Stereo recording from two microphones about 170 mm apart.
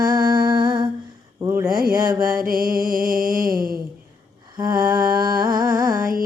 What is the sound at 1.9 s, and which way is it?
Music, 20° right (ahead or behind).